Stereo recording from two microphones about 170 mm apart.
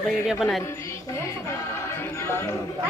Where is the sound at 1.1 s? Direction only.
15° left (ahead or behind).